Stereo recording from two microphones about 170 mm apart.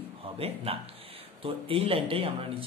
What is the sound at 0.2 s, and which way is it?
A man's voice, 35° right (ahead or behind).